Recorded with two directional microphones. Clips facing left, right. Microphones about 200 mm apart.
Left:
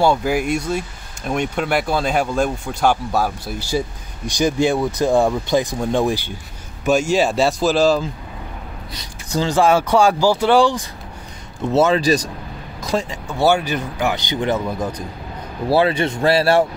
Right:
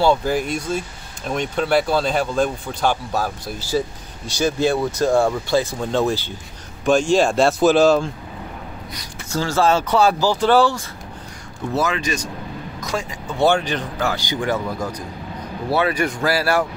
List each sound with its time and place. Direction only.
0.0 s a man's voice: 10° left (ahead or behind)
8.9 s speech: 20° left (ahead or behind)
11.7 s speech: 30° left (ahead or behind)
13.4 s speech: 10° left (ahead or behind); by 16.6 s 25° left (ahead or behind)